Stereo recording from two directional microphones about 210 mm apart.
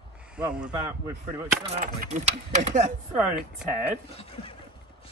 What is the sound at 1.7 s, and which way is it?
Speech, 35° right (ahead or behind).